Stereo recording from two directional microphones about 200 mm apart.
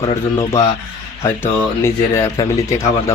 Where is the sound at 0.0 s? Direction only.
25° left (ahead or behind).